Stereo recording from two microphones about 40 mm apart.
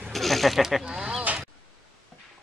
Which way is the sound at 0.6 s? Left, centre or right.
Centre.